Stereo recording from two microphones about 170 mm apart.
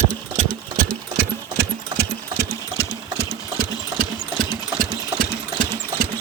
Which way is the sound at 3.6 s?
55° right (ahead or behind).